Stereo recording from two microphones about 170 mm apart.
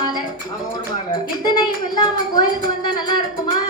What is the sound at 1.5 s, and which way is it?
A woman's voice, 25° left (ahead or behind).